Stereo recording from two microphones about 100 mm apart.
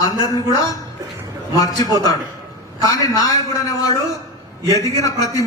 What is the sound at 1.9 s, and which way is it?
A man's voice, 40° left (ahead or behind).